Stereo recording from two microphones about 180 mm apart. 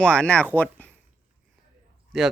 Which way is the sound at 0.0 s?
5° left (ahead or behind).